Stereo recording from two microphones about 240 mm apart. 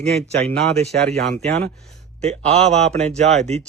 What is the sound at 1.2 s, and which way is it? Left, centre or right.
Speech, right.